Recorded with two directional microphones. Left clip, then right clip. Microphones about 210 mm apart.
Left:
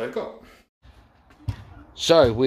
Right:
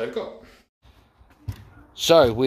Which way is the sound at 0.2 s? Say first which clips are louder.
Even; 15° left (ahead or behind).